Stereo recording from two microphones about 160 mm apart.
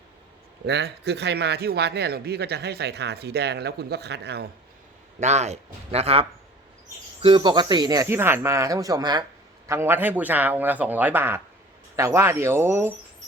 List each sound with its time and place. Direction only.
0.6 s a man's voice: 90° right
5.2 s speech: 45° right (ahead or behind); by 12.9 s 15° right (ahead or behind)